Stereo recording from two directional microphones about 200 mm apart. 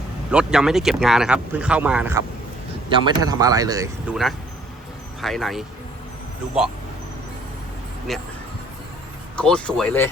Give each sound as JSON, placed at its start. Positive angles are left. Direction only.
{"t": 0.3, "sound": "speech", "side_deg": -5}
{"t": 2.9, "sound": "speech", "side_deg": -20}
{"t": 4.1, "sound": "speech", "side_deg": 0}
{"t": 8.1, "sound": "speech", "side_deg": 0}
{"t": 9.3, "sound": "speech", "side_deg": 5}